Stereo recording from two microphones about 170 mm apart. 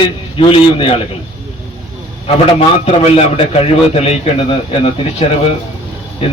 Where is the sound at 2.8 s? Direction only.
35° left (ahead or behind).